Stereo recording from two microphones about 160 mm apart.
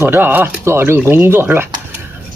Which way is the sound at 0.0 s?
15° right (ahead or behind).